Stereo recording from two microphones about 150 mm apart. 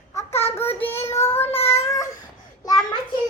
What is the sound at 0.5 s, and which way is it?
Child singing, 15° left (ahead or behind).